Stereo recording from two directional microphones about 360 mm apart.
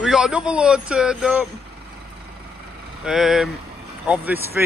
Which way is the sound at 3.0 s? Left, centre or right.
Centre.